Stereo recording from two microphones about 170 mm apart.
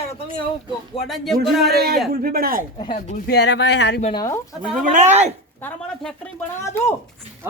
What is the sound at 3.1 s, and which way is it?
Speech, 75° left (ahead or behind).